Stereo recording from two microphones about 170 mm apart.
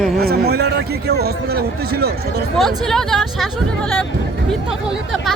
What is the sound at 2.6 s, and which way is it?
Speech, centre (ahead or behind).